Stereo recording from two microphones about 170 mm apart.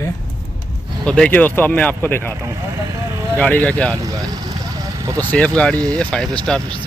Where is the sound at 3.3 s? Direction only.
10° left (ahead or behind).